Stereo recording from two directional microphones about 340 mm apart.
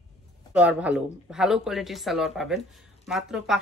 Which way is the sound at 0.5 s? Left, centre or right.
Centre.